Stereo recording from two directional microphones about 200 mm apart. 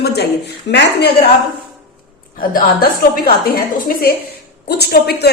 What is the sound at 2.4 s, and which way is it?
A woman's voice, 45° left (ahead or behind).